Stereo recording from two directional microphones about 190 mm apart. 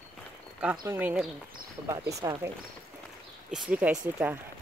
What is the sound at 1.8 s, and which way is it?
Speech, 20° right (ahead or behind).